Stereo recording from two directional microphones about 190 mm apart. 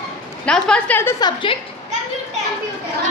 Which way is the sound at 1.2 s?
25° left (ahead or behind).